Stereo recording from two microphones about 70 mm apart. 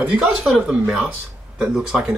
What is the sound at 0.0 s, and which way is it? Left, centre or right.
Speech, centre.